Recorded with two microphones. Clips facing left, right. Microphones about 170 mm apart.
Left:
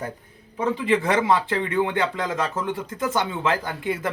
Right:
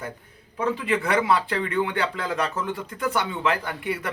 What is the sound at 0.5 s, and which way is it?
Speech, 20° left (ahead or behind).